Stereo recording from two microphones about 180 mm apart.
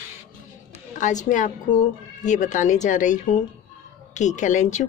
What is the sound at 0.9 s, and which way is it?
A woman's voice, 45° left (ahead or behind).